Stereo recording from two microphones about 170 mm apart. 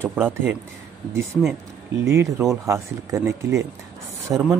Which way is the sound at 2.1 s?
15° right (ahead or behind).